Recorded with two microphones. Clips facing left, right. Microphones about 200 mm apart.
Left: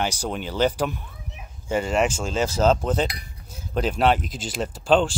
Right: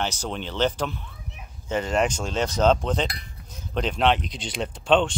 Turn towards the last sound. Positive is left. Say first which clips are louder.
# left 1 dB
turn(degrees=0)  # may be behind; listen again after turning